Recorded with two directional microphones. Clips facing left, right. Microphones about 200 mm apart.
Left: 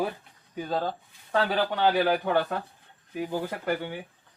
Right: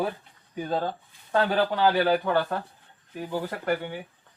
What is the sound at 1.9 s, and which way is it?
Speech, 10° left (ahead or behind).